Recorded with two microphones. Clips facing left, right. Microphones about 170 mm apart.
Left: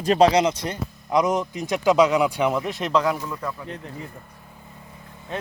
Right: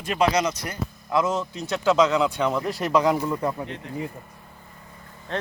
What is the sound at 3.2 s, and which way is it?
Speech, 25° right (ahead or behind).